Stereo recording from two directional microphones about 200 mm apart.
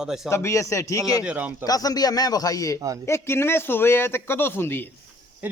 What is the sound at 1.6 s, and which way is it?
A man's voice, 20° left (ahead or behind).